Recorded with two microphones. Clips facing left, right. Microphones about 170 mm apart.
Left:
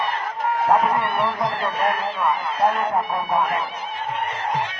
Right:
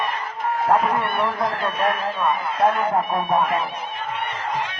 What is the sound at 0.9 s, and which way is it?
Speech, centre (ahead or behind).